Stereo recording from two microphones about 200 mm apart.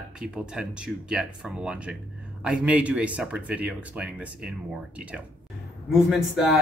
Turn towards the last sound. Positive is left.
turn(degrees=0)  # may be behind; listen again after turning